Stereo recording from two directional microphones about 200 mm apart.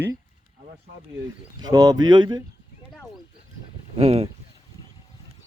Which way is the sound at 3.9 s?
30° right (ahead or behind).